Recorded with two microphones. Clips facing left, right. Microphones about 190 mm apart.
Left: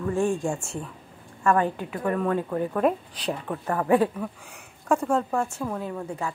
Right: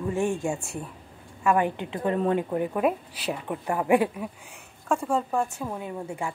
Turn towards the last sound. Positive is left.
turn(degrees=-10)  # may be behind; listen again after turning